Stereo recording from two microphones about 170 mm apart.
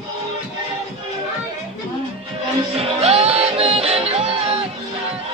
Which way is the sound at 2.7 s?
35° right (ahead or behind).